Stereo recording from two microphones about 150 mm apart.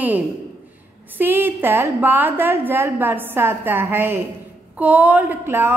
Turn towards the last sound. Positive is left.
turn(degrees=-15)  # may be behind; listen again after turning